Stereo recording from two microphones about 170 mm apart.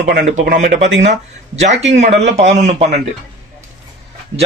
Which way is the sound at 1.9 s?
40° right (ahead or behind).